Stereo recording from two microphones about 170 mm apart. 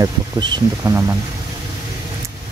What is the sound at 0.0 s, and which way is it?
Speech, 20° right (ahead or behind).